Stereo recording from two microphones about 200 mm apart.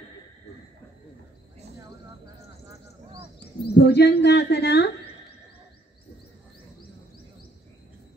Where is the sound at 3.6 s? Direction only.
55° left (ahead or behind).